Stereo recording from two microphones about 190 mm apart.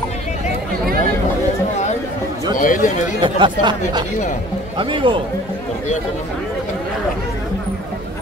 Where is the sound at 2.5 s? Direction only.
45° left (ahead or behind).